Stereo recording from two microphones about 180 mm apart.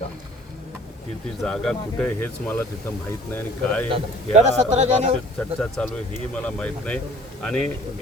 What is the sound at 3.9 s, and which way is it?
Speech, 40° right (ahead or behind).